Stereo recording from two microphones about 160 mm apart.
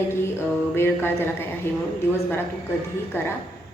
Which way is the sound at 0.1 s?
15° left (ahead or behind).